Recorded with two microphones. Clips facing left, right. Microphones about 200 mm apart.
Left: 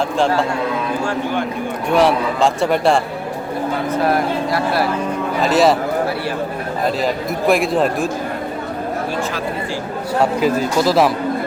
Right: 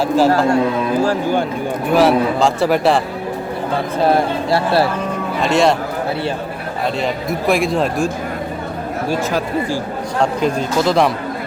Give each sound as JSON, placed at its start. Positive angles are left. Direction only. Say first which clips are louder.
{"t": 1.0, "sound": "speech", "louder": "right 4 dB", "side_deg": -35}
{"t": 1.9, "sound": "a man's voice", "louder": "right 2 dB", "side_deg": 0}
{"t": 4.0, "sound": "speech", "louder": "right 4 dB", "side_deg": -30}
{"t": 5.4, "sound": "a man's voice", "louder": "even", "side_deg": 5}
{"t": 6.8, "sound": "a man's voice", "louder": "even", "side_deg": 0}
{"t": 10.2, "sound": "a man's voice", "louder": "left 1 dB", "side_deg": 5}